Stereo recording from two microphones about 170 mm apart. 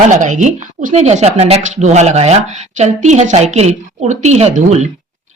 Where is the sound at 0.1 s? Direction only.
45° right (ahead or behind).